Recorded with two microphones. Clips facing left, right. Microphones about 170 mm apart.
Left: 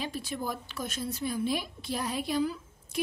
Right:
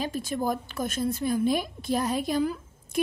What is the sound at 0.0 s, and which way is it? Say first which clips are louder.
A woman's voice: right 6 dB; 45° right (ahead or behind).